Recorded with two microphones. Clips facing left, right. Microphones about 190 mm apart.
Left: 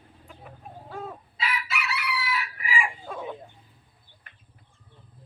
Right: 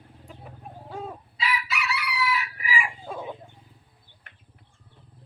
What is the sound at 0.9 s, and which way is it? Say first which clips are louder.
Chicken: right 1 dB; 15° right (ahead or behind).